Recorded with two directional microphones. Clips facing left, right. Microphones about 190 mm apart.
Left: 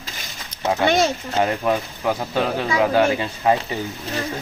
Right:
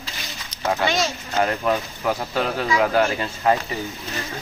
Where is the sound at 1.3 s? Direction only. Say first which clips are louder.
Right 2 dB; 15° left (ahead or behind).